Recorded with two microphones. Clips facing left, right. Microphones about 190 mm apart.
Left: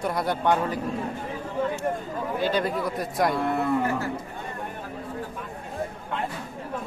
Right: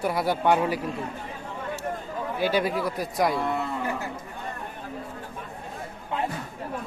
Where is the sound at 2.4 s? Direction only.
5° right (ahead or behind).